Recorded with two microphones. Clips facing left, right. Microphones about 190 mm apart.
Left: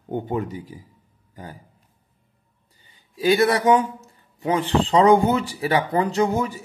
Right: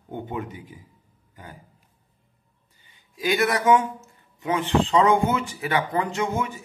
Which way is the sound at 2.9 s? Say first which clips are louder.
Left 6 dB; 30° left (ahead or behind).